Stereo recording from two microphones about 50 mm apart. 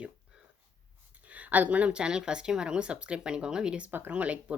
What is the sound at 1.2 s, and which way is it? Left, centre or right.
Speech, right.